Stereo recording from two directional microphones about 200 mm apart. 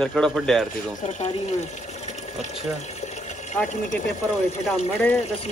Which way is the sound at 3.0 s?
35° left (ahead or behind).